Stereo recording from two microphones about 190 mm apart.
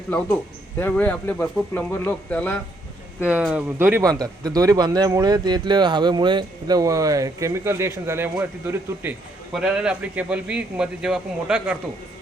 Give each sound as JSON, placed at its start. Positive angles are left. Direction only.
{"t": 0.8, "sound": "speech", "side_deg": 10}
{"t": 3.2, "sound": "a man's voice", "side_deg": -5}